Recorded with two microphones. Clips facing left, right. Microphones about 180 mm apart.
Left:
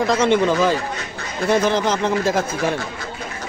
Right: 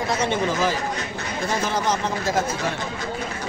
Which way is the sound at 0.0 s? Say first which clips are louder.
Left 6 dB; 90° left.